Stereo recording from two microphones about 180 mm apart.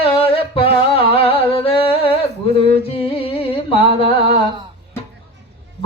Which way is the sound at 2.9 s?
30° left (ahead or behind).